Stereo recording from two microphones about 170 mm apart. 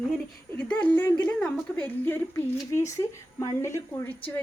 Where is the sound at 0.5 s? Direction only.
10° left (ahead or behind).